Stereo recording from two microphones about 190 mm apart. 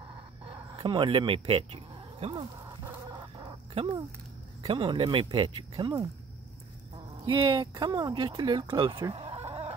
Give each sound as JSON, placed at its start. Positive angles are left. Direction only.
{"t": 0.5, "sound": "speech", "side_deg": -25}
{"t": 2.8, "sound": "chicken", "side_deg": -20}
{"t": 4.6, "sound": "speech", "side_deg": -25}
{"t": 7.2, "sound": "speech", "side_deg": -25}